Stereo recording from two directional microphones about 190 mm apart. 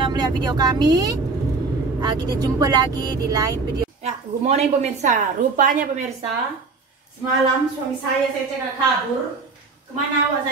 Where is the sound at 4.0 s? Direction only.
35° right (ahead or behind).